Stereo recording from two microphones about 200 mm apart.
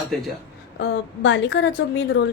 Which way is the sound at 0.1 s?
Centre (ahead or behind).